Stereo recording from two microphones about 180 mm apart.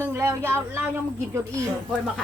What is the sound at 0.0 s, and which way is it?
A woman's voice, 15° right (ahead or behind).